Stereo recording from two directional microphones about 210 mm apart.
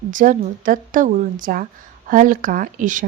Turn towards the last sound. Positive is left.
turn(degrees=-40)  # may be behind; listen again after turning